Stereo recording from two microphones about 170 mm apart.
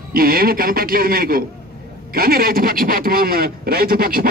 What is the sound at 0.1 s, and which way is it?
A man's voice, 60° right (ahead or behind).